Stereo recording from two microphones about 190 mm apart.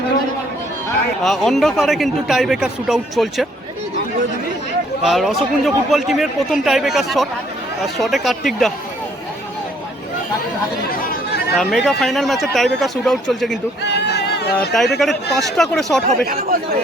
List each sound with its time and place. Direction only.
1.2 s speech: centre (ahead or behind)
5.0 s speech: centre (ahead or behind)
11.1 s chatter: 60° left (ahead or behind)
11.5 s speech: centre (ahead or behind)
13.8 s speech: 65° left (ahead or behind)
14.6 s speech: centre (ahead or behind)
16.2 s speech: 50° right (ahead or behind)